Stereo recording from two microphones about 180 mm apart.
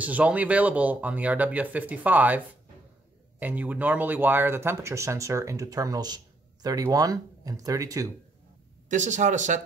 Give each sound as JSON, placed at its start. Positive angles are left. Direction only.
{"t": 0.0, "sound": "speech", "side_deg": -10}
{"t": 8.8, "sound": "speech", "side_deg": -45}